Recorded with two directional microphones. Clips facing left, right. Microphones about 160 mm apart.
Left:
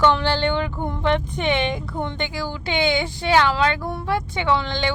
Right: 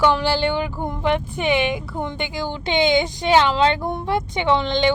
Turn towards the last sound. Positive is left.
turn(degrees=-20)  # may be behind; listen again after turning